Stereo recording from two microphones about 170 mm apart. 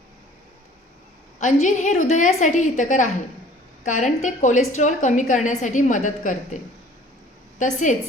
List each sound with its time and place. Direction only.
1.4 s a woman's voice: 45° left (ahead or behind)
7.6 s a woman's voice: 45° left (ahead or behind)